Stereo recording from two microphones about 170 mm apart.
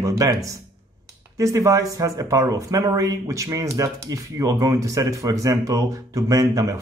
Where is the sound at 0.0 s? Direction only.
20° right (ahead or behind).